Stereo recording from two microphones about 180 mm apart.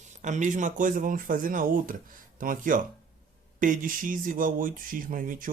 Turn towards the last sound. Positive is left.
turn(degrees=-50)  # may be behind; listen again after turning